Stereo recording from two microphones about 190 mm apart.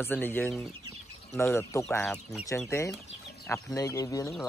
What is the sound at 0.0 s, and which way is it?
Speech, 10° left (ahead or behind).